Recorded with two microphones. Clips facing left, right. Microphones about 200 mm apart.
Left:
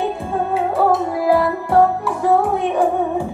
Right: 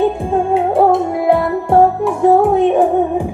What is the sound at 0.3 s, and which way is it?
Music, 25° right (ahead or behind).